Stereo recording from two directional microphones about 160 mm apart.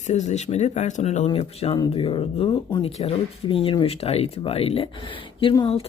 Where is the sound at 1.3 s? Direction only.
35° left (ahead or behind).